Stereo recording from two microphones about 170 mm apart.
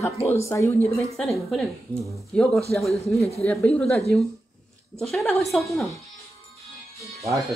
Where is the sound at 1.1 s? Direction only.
Centre (ahead or behind).